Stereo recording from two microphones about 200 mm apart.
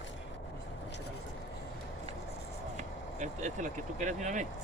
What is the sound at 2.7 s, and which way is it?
Speech, 35° right (ahead or behind).